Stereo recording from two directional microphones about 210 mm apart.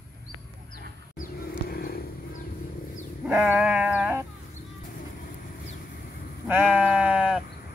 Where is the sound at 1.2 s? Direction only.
45° left (ahead or behind).